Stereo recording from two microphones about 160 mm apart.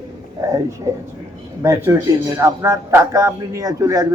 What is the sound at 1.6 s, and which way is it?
Speech, 15° right (ahead or behind).